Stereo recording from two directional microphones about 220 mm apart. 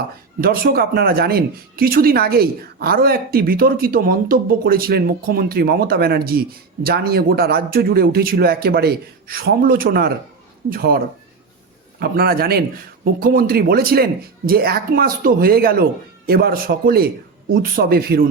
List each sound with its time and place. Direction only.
0.4 s speech: 45° right (ahead or behind)